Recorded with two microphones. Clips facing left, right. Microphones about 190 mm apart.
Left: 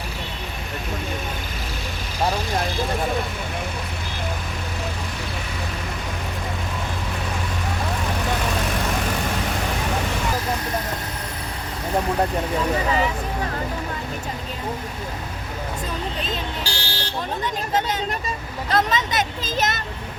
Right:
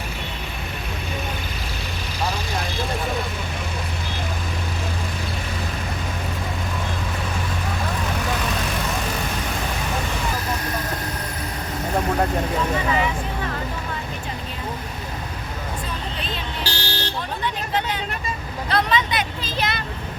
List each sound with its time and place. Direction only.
16.6 s vehicle: 10° left (ahead or behind)
18.7 s vehicle: 45° left (ahead or behind)